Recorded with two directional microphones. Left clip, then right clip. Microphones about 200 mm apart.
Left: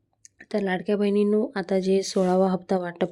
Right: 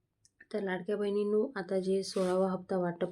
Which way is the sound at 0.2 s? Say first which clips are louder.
Left 9 dB; 40° left (ahead or behind).